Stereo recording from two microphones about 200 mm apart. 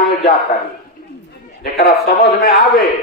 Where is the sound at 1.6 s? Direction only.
50° left (ahead or behind).